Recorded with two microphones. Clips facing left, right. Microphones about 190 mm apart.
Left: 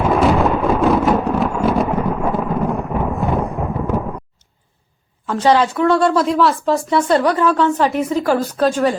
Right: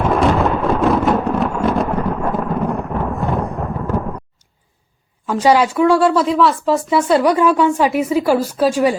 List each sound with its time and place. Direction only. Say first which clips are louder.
0.0 s thunder: left 1 dB; centre (ahead or behind)
5.2 s speech: right 1 dB; 10° right (ahead or behind)